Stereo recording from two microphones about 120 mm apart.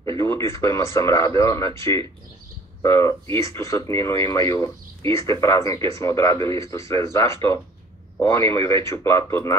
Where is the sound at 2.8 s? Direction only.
25° left (ahead or behind).